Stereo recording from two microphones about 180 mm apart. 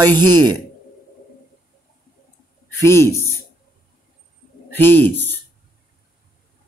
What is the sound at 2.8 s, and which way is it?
Speech, 15° left (ahead or behind).